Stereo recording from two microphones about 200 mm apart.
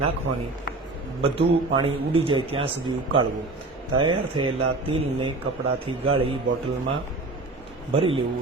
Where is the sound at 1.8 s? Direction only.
25° right (ahead or behind).